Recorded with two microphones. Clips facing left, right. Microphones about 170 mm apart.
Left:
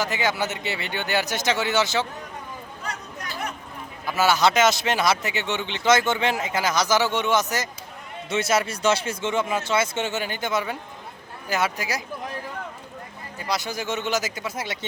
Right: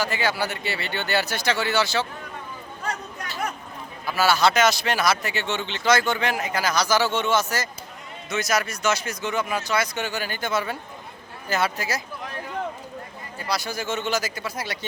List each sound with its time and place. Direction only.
0.0 s speech: 20° left (ahead or behind)
4.0 s speech: 20° left (ahead or behind)
13.5 s speech: 20° left (ahead or behind)